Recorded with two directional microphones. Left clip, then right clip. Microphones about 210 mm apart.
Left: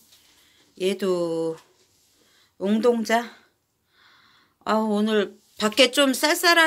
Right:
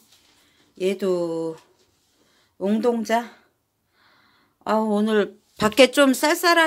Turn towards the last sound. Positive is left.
turn(degrees=-10)  # may be behind; listen again after turning